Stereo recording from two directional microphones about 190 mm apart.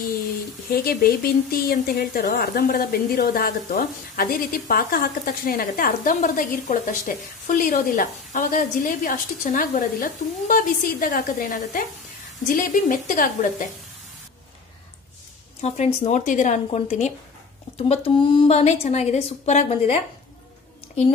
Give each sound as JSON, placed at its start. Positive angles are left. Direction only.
{"t": 0.7, "sound": "speech", "side_deg": 55}
{"t": 15.6, "sound": "a woman's voice", "side_deg": 35}